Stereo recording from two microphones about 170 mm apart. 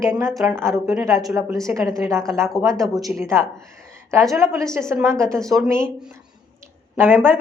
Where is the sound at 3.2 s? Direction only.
15° right (ahead or behind).